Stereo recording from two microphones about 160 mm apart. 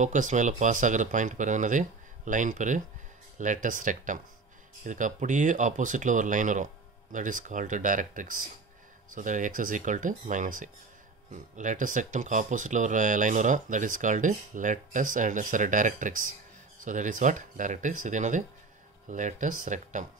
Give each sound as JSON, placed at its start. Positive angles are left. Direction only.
{"t": 0.0, "sound": "speech", "side_deg": -50}